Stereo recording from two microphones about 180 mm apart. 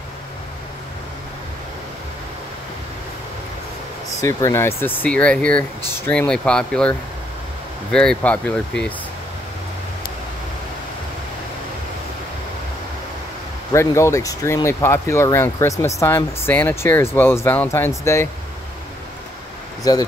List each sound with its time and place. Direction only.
4.2 s speech: 15° left (ahead or behind)
13.7 s speech: 15° left (ahead or behind)
19.8 s speech: 20° left (ahead or behind)